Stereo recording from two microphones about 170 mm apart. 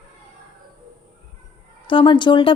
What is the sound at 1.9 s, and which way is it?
Speech, 30° left (ahead or behind).